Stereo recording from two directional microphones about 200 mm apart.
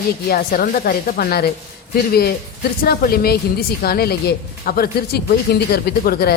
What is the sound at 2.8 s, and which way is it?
A woman's voice, 50° left (ahead or behind).